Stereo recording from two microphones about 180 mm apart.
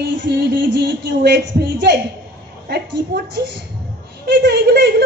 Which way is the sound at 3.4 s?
65° right (ahead or behind).